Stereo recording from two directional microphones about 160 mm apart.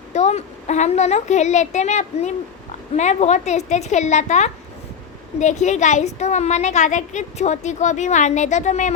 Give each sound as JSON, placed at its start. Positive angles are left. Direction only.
{"t": 0.1, "sound": "speech", "side_deg": 45}